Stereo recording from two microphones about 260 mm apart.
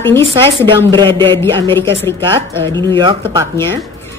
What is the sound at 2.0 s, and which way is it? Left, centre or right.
Speech, centre.